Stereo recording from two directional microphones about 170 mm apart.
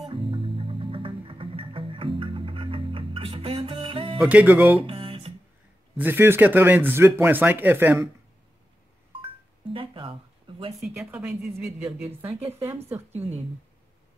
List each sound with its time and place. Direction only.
0.0 s music: 30° right (ahead or behind)
4.2 s speech: 10° right (ahead or behind)
4.7 s music: 35° right (ahead or behind)
5.9 s speech: 10° right (ahead or behind)
9.7 s a sound: 30° right (ahead or behind)
10.8 s speech: 5° right (ahead or behind)